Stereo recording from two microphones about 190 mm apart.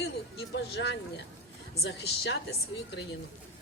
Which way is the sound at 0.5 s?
70° left (ahead or behind).